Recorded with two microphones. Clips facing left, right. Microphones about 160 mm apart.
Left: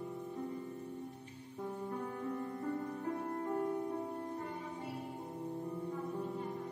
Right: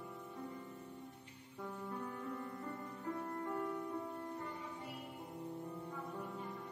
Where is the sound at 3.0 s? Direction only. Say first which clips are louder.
Left 2 dB; 25° left (ahead or behind).